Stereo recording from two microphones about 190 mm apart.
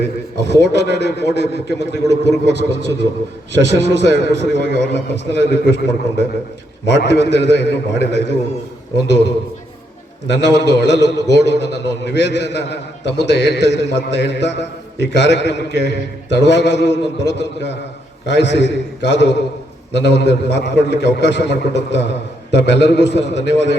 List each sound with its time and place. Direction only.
0.4 s a man's voice: 65° left (ahead or behind)